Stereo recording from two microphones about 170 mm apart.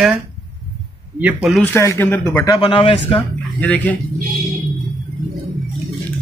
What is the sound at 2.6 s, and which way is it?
Speech, 30° left (ahead or behind).